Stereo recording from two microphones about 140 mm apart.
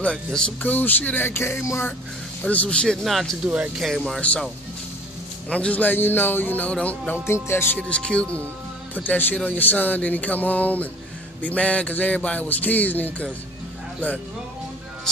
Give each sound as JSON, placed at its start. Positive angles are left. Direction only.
{"t": 0.0, "sound": "speech", "side_deg": 5}
{"t": 3.4, "sound": "speech", "side_deg": -10}
{"t": 3.7, "sound": "speech", "side_deg": 0}
{"t": 5.5, "sound": "speech", "side_deg": 10}